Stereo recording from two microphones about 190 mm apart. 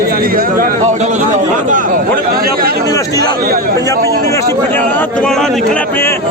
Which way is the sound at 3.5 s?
50° right (ahead or behind).